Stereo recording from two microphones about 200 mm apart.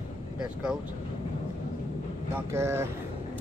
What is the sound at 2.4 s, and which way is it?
Speech, 15° right (ahead or behind).